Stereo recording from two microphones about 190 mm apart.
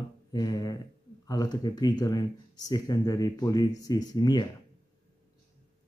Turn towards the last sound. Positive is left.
turn(degrees=20)  # may be behind; listen again after turning